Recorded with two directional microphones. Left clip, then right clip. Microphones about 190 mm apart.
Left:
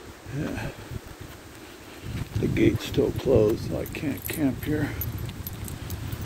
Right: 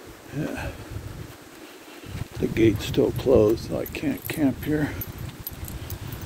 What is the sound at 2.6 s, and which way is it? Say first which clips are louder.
Speech: right 2 dB; 15° right (ahead or behind).